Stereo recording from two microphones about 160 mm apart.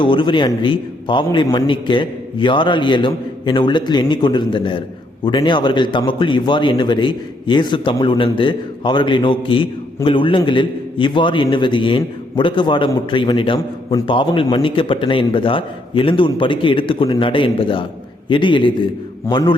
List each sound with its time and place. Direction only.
0.0 s a man's voice: 30° left (ahead or behind)